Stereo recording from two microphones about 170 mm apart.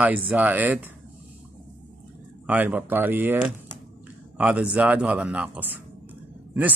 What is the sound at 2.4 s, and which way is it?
Speech, 10° right (ahead or behind).